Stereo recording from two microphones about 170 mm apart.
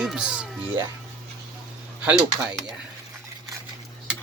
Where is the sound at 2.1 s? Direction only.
5° right (ahead or behind).